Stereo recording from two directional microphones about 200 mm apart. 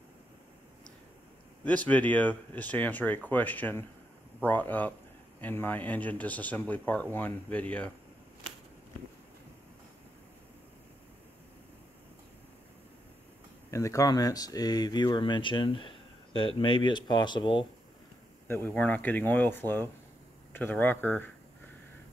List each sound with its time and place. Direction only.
1.6 s speech: 5° left (ahead or behind)
13.7 s speech: 15° left (ahead or behind)
18.5 s speech: 10° left (ahead or behind)